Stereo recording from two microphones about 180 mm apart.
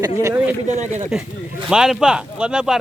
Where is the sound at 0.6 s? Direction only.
45° right (ahead or behind).